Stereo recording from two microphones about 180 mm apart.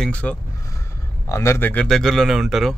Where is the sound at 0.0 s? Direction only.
5° left (ahead or behind).